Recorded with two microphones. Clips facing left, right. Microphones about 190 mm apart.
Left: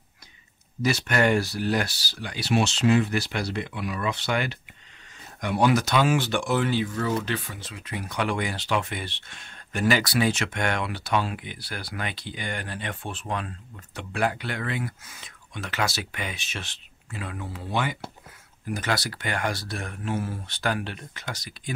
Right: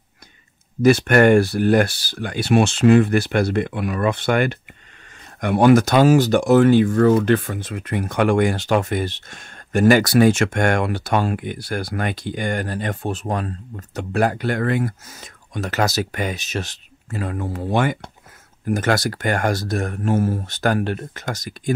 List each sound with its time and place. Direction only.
0.8 s speech: 55° right (ahead or behind)